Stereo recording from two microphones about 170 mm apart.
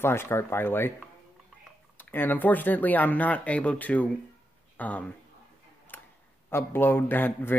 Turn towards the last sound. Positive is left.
turn(degrees=10)  # may be behind; listen again after turning